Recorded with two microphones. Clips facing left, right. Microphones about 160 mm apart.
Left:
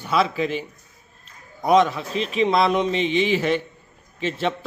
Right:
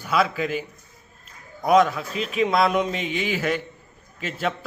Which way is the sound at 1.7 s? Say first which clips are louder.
Even; centre (ahead or behind).